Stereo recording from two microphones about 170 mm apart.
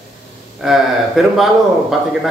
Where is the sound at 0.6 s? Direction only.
Centre (ahead or behind).